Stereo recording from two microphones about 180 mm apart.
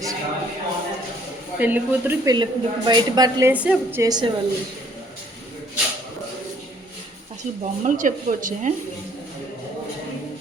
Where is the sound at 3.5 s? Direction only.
5° right (ahead or behind).